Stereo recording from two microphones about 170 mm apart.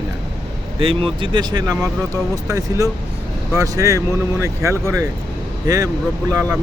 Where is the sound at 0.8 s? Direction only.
30° right (ahead or behind).